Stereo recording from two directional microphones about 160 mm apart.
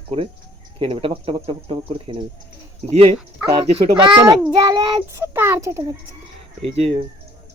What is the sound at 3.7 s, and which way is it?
Speech, 35° right (ahead or behind).